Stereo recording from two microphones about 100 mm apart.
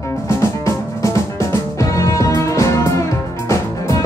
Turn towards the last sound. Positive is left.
turn(degrees=30)  # may be behind; listen again after turning